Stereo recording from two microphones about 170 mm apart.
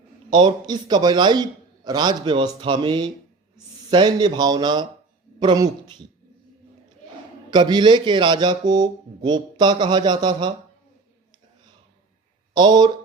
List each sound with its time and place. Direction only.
0.3 s speech: 25° right (ahead or behind)
7.5 s speech: 25° right (ahead or behind)
12.5 s speech: 25° right (ahead or behind)